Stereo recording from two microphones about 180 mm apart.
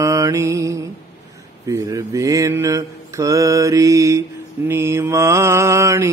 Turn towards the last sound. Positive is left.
turn(degrees=-15)  # may be behind; listen again after turning